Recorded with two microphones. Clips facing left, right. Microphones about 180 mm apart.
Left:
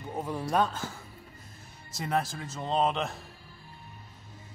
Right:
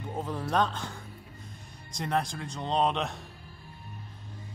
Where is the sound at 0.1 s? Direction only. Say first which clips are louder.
Left 1 dB; 10° left (ahead or behind).